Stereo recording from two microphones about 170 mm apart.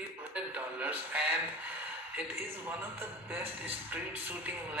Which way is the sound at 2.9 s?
10° right (ahead or behind).